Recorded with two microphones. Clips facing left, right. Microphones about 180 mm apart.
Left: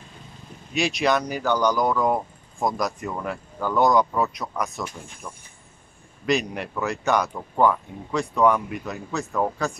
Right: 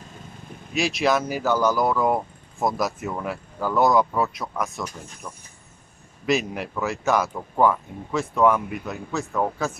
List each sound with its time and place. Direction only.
0.7 s speech: centre (ahead or behind)